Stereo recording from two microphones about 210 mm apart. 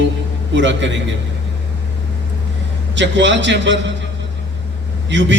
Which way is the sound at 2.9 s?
60° right (ahead or behind).